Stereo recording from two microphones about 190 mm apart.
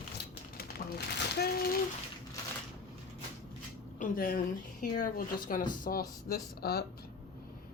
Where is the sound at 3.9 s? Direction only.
50° left (ahead or behind).